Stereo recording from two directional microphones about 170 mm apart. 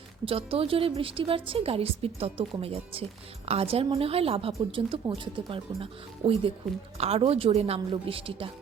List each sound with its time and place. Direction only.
0.3 s a woman's voice: 35° right (ahead or behind)